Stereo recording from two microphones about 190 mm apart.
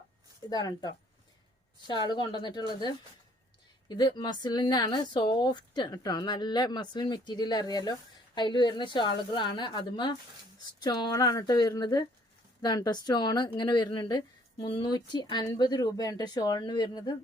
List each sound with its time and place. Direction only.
0.5 s a woman's voice: 20° left (ahead or behind)